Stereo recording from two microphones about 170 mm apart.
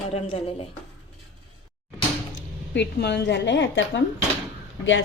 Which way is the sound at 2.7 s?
85° left.